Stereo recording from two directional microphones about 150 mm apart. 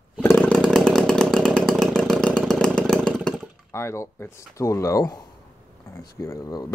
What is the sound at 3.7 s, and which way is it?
Speech, 20° left (ahead or behind).